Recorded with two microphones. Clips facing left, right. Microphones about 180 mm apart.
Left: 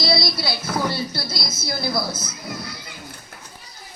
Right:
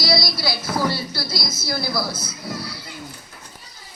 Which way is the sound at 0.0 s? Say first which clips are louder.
Even; 25° left (ahead or behind).